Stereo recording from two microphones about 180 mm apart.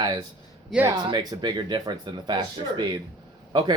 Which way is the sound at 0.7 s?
5° right (ahead or behind).